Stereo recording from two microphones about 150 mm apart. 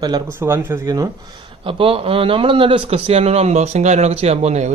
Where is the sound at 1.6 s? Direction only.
40° right (ahead or behind).